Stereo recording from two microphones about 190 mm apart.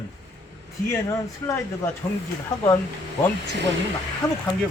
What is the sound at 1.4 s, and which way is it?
Speech, 15° left (ahead or behind).